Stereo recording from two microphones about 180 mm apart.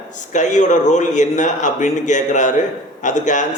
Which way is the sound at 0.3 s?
45° left (ahead or behind).